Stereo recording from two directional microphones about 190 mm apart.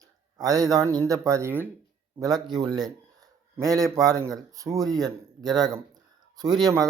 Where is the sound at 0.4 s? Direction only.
20° right (ahead or behind).